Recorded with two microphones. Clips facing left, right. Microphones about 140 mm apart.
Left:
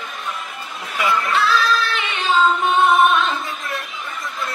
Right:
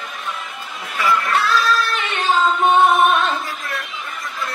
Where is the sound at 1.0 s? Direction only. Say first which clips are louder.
Even; centre (ahead or behind).